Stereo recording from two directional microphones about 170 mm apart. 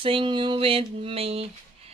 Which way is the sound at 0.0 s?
30° right (ahead or behind).